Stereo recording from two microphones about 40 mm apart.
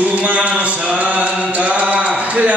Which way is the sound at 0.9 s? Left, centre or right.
Right.